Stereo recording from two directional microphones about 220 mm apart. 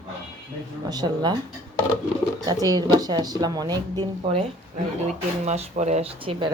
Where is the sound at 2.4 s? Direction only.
15° right (ahead or behind).